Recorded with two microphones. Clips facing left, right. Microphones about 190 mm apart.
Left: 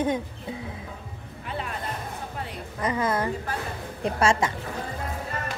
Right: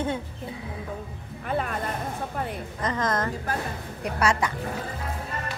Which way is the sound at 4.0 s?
25° left (ahead or behind).